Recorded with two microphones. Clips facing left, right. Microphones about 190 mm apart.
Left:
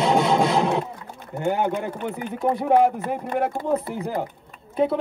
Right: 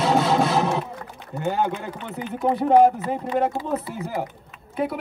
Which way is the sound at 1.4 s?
15° left (ahead or behind).